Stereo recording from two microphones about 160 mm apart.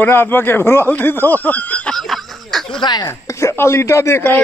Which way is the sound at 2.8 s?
25° left (ahead or behind).